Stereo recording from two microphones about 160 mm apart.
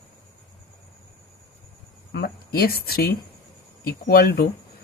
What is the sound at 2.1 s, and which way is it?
Speech, 75° left (ahead or behind).